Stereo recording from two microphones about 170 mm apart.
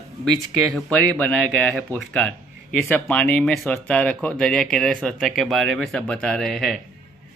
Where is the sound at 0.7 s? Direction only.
5° left (ahead or behind).